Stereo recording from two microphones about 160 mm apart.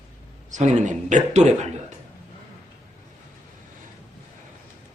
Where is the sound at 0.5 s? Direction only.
50° right (ahead or behind).